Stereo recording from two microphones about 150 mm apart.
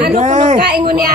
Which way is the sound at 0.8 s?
75° right (ahead or behind).